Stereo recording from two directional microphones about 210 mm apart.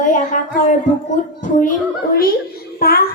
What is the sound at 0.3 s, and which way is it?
Speech, 35° left (ahead or behind).